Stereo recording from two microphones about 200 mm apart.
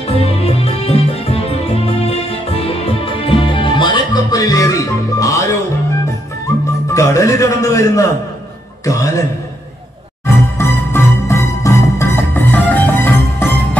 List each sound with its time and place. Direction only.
0.0 s music: 30° left (ahead or behind)
6.9 s a man's voice: 15° left (ahead or behind)
10.2 s music: 10° left (ahead or behind)